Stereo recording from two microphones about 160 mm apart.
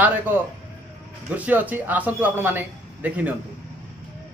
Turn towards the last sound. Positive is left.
turn(degrees=-10)  # may be behind; listen again after turning